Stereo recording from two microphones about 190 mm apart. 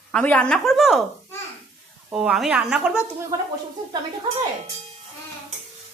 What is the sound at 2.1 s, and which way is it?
Speech, 5° right (ahead or behind).